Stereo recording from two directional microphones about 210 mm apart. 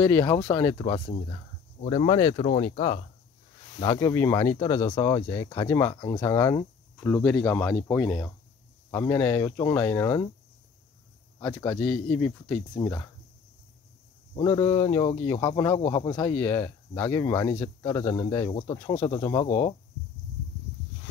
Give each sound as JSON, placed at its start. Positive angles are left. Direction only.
{"t": 0.0, "sound": "speech", "side_deg": 15}
{"t": 3.8, "sound": "speech", "side_deg": 15}
{"t": 11.3, "sound": "speech", "side_deg": 15}
{"t": 14.4, "sound": "speech", "side_deg": 20}